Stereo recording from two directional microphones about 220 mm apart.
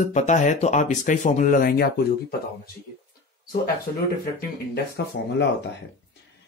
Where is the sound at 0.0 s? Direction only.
30° left (ahead or behind).